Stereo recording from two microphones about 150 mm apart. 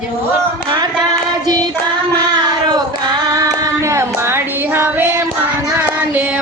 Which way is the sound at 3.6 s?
20° right (ahead or behind).